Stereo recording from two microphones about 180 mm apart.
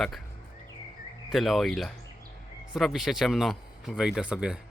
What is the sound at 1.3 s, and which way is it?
Speech, centre (ahead or behind).